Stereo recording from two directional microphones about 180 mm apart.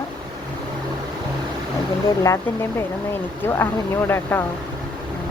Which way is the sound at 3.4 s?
10° left (ahead or behind).